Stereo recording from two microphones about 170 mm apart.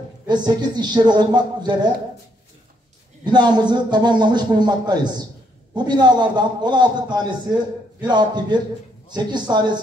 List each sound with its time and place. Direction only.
0.3 s speech: 25° right (ahead or behind)
3.3 s speech: 25° right (ahead or behind)